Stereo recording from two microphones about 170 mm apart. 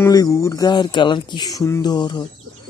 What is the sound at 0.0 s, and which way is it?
Speech, 20° left (ahead or behind).